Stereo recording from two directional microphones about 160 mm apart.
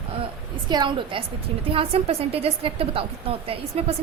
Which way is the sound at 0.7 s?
30° right (ahead or behind).